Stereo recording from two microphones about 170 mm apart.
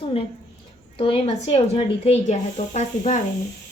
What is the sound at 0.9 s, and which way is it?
Speech, 35° left (ahead or behind).